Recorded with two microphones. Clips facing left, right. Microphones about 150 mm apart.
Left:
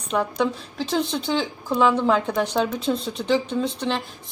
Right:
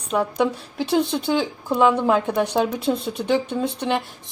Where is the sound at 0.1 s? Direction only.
10° right (ahead or behind).